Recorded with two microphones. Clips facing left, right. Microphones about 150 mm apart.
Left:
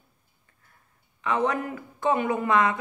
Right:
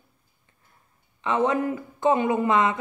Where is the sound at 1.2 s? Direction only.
25° right (ahead or behind).